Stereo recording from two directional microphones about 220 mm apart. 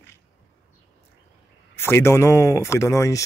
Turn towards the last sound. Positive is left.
turn(degrees=15)  # may be behind; listen again after turning